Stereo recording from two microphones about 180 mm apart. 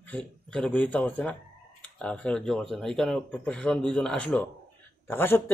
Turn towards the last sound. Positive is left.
turn(degrees=10)  # may be behind; listen again after turning